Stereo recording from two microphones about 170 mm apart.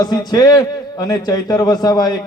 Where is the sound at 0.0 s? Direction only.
20° left (ahead or behind).